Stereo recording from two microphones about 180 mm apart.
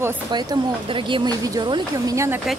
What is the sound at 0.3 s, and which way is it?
Speech, 25° right (ahead or behind).